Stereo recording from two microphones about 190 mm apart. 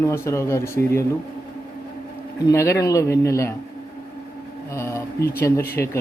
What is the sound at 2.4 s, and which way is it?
Speech, 15° left (ahead or behind).